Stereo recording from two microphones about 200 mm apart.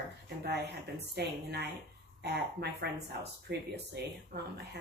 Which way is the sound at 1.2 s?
55° right (ahead or behind).